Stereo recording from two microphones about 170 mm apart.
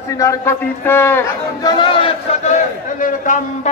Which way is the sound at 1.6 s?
25° left (ahead or behind).